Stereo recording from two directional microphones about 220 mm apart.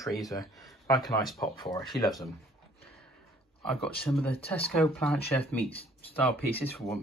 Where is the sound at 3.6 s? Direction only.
5° left (ahead or behind).